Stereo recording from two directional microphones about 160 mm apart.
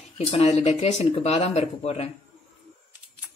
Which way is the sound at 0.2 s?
40° left (ahead or behind).